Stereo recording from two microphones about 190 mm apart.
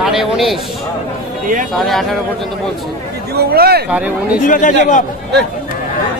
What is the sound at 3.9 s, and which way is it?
Speech, 5° right (ahead or behind).